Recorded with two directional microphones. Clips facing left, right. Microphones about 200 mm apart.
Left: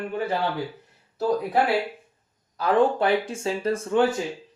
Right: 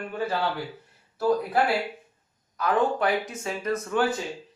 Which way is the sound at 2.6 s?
30° left (ahead or behind).